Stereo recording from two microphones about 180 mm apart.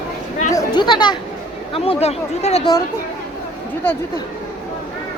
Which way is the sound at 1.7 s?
30° left (ahead or behind).